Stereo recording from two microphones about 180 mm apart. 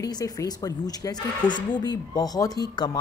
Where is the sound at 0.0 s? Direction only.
20° left (ahead or behind).